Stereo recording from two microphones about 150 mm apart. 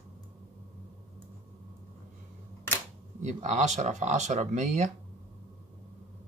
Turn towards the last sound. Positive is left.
turn(degrees=-50)  # may be behind; listen again after turning